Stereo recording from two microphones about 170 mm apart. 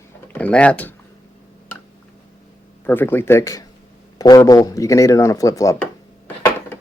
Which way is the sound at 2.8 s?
10° left (ahead or behind).